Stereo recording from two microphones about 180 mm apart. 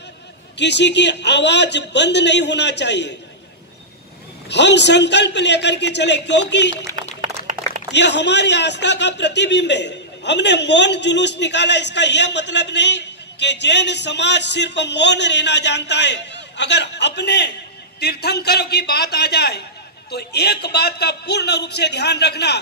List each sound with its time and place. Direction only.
0.6 s a man's voice: 75° left (ahead or behind)
4.5 s a man's voice: 75° left (ahead or behind)
7.9 s a man's voice: 75° left (ahead or behind)